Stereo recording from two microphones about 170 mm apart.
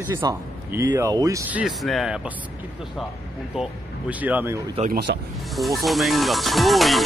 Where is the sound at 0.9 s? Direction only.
20° right (ahead or behind).